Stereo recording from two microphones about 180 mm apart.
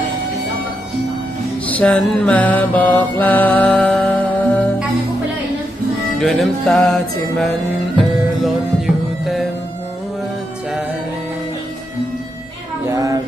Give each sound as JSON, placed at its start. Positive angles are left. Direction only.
{"t": 1.6, "sound": "mantra", "side_deg": 5}
{"t": 6.1, "sound": "music", "side_deg": 0}
{"t": 9.2, "sound": "music", "side_deg": 0}
{"t": 12.9, "sound": "child singing", "side_deg": -20}